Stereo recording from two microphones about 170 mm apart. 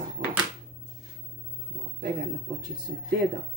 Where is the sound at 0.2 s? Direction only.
60° right (ahead or behind).